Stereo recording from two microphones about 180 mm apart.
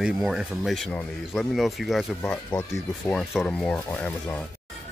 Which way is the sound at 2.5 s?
20° left (ahead or behind).